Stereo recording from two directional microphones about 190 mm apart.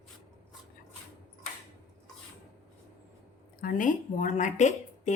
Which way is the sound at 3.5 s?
45° left (ahead or behind).